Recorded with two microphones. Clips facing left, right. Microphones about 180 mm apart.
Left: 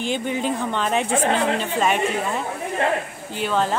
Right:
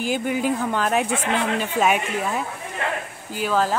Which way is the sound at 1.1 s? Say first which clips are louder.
Left 3 dB; 35° left (ahead or behind).